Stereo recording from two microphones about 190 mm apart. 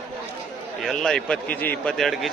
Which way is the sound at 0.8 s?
Centre (ahead or behind).